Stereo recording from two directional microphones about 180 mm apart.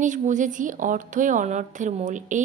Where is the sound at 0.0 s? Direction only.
45° right (ahead or behind).